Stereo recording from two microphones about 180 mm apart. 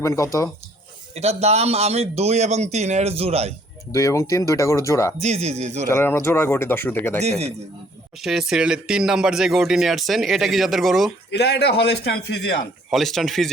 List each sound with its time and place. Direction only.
0.0 s speech: 15° left (ahead or behind)
1.1 s a man's voice: 35° right (ahead or behind)
3.9 s speech: 15° left (ahead or behind)
5.1 s a man's voice: 35° right (ahead or behind)
5.9 s speech: 15° left (ahead or behind)
7.2 s a man's voice: 35° right (ahead or behind)
8.2 s speech: centre (ahead or behind)
11.3 s a man's voice: 70° left (ahead or behind)
12.9 s speech: centre (ahead or behind)